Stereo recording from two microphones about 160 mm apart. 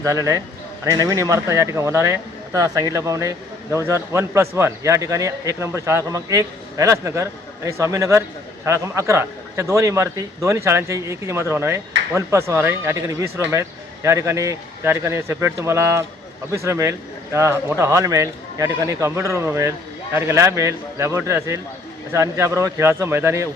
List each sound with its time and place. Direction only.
0.0 s a man's voice: 20° right (ahead or behind)